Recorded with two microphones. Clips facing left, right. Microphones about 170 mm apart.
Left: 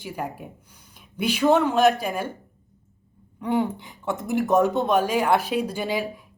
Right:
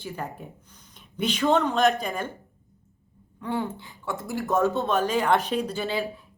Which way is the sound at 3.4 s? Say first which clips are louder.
Left 5 dB; 15° left (ahead or behind).